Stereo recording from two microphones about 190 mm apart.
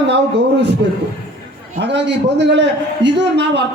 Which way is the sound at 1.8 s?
65° right (ahead or behind).